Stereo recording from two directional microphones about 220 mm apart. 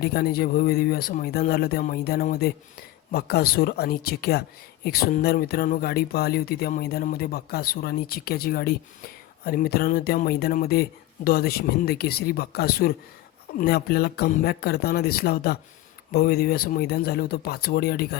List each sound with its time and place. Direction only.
0.0 s speech: 45° left (ahead or behind)